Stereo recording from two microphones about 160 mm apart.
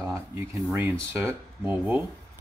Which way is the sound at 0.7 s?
15° right (ahead or behind).